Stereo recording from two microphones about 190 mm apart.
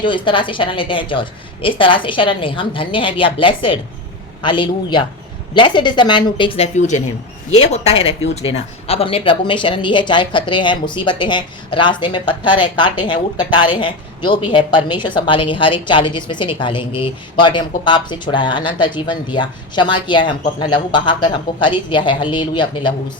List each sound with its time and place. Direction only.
0.0 s a woman's voice: 25° left (ahead or behind)